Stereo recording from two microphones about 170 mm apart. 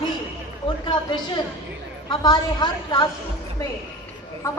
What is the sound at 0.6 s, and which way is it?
A woman's voice, 30° left (ahead or behind).